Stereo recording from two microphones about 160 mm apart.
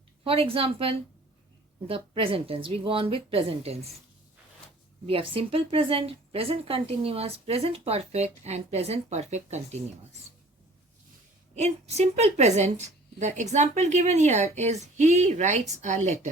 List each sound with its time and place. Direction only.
0.3 s speech: 35° right (ahead or behind)
5.0 s speech: 35° right (ahead or behind)
11.5 s a woman's voice: 40° right (ahead or behind)